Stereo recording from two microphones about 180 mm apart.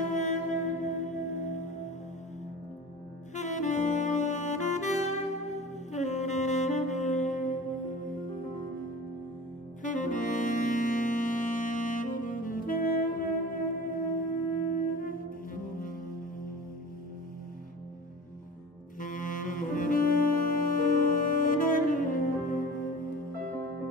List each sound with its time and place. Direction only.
0.0 s music: 45° left (ahead or behind)
3.3 s saxophone: 40° left (ahead or behind)
9.8 s saxophone: 45° left (ahead or behind)
18.9 s saxophone: 50° left (ahead or behind)